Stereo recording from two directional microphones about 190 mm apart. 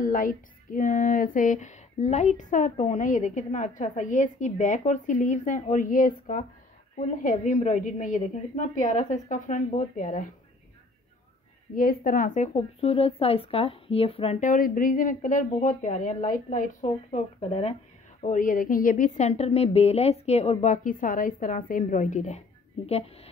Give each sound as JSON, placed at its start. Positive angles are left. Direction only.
{"t": 0.0, "sound": "speech", "side_deg": 45}
{"t": 11.7, "sound": "speech", "side_deg": 50}
{"t": 14.5, "sound": "a woman's voice", "side_deg": 45}
{"t": 18.2, "sound": "speech", "side_deg": 45}